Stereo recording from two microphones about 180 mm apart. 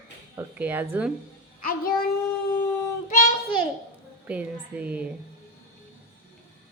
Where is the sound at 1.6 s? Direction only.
55° left (ahead or behind).